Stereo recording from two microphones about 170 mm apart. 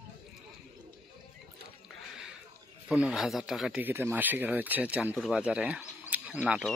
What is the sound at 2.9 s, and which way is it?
Speech, 5° right (ahead or behind).